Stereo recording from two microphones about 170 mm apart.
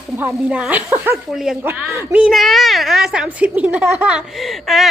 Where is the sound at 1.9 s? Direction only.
15° right (ahead or behind).